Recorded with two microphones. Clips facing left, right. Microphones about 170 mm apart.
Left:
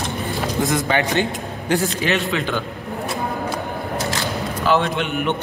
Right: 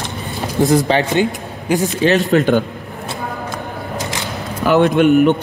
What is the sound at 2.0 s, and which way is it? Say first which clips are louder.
Speech: right 8 dB; 40° right (ahead or behind).